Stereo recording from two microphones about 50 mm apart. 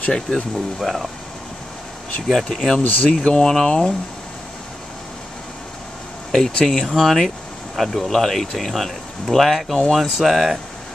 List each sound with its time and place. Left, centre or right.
0.0 s speech: left
0.7 s speech: centre
2.3 s speech: centre
2.8 s speech: left
3.3 s speech: centre
6.3 s speech: centre